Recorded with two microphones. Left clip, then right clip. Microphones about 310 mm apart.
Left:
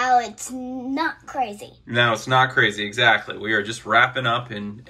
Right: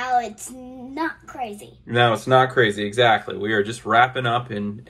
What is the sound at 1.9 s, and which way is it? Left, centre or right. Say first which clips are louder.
Speech: right 2 dB; centre.